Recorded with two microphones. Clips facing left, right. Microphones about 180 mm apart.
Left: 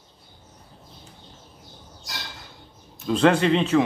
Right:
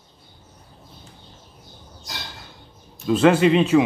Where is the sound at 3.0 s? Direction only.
5° right (ahead or behind).